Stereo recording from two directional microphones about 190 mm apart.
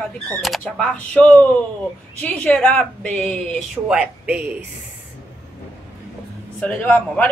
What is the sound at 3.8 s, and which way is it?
Speech, 5° right (ahead or behind).